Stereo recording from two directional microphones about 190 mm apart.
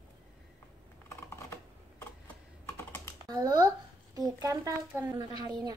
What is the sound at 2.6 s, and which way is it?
Computer keyboard, 15° left (ahead or behind).